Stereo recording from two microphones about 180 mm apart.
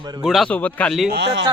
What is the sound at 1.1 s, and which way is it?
Speech, 75° right (ahead or behind).